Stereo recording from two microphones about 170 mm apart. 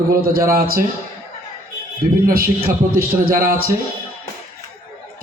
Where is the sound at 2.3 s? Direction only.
60° right (ahead or behind).